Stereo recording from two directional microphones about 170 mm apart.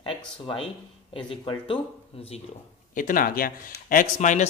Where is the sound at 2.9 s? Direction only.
50° left (ahead or behind).